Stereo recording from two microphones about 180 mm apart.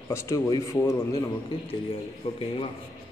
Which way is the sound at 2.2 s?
30° left (ahead or behind).